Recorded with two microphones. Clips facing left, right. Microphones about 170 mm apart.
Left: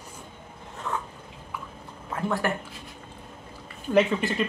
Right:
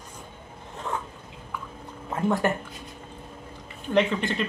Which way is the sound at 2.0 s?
20° right (ahead or behind).